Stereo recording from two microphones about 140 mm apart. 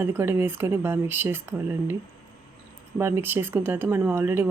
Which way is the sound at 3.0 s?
15° right (ahead or behind).